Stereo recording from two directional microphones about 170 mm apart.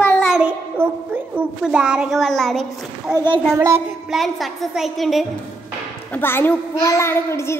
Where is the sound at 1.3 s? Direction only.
5° right (ahead or behind).